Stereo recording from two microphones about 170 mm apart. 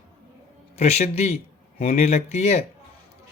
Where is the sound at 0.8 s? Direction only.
40° left (ahead or behind).